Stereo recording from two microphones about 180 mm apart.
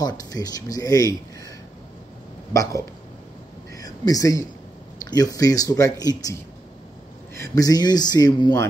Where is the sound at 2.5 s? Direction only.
20° left (ahead or behind).